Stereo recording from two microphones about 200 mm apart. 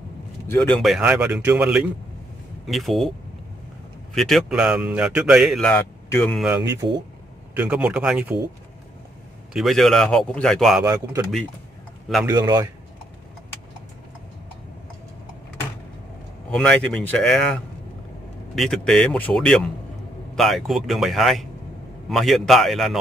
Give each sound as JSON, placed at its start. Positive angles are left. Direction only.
{"t": 0.5, "sound": "speech", "side_deg": 5}
{"t": 4.1, "sound": "speech", "side_deg": 0}
{"t": 6.4, "sound": "speech", "side_deg": -10}
{"t": 9.5, "sound": "speech", "side_deg": 0}
{"t": 10.8, "sound": "speech", "side_deg": -20}
{"t": 12.1, "sound": "speech", "side_deg": 0}
{"t": 12.4, "sound": "speech", "side_deg": -20}
{"t": 16.4, "sound": "speech", "side_deg": 5}